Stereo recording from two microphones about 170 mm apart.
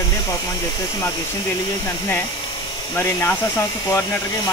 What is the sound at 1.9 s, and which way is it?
Speech, 15° left (ahead or behind).